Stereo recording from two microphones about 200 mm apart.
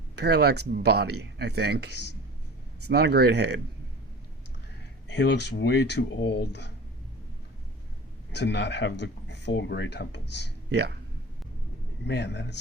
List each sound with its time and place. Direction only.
0.2 s speech: 55° right (ahead or behind)
2.9 s speech: 55° right (ahead or behind)
5.1 s speech: 60° left (ahead or behind)
8.3 s speech: 60° left (ahead or behind)
10.7 s speech: 55° right (ahead or behind)
12.0 s speech: 60° left (ahead or behind)